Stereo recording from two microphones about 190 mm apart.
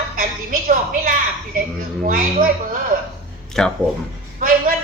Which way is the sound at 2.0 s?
45° right (ahead or behind).